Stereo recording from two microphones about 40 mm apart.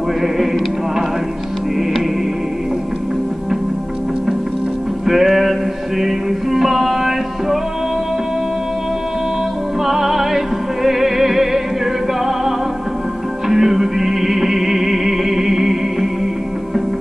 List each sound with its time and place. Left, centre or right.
5.0 s music: centre
9.8 s music: centre
13.5 s music: centre